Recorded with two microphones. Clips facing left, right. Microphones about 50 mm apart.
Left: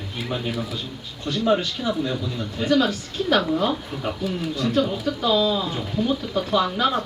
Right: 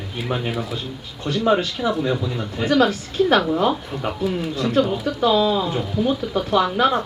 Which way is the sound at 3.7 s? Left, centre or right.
Centre.